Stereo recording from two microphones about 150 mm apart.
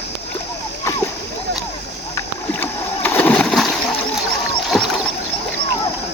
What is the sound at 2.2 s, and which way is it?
Splash, 15° left (ahead or behind).